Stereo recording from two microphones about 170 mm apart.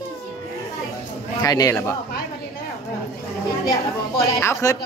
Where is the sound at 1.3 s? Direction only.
20° left (ahead or behind).